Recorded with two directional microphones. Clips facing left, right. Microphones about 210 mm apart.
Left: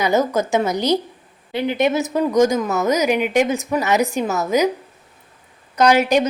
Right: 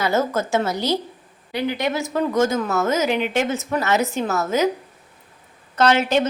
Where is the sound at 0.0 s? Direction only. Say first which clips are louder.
Left 3 dB; 15° left (ahead or behind).